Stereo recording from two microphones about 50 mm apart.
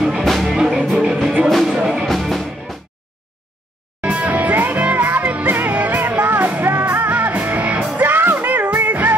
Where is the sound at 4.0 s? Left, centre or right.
Right.